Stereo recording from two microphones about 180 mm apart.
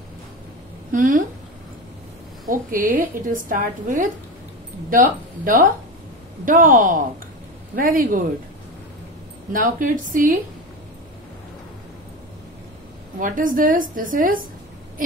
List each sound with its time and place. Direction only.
0.9 s a woman's voice: 45° right (ahead or behind)
2.4 s a woman's voice: 50° right (ahead or behind)
9.5 s a woman's voice: 50° right (ahead or behind)
13.2 s a woman's voice: 50° right (ahead or behind)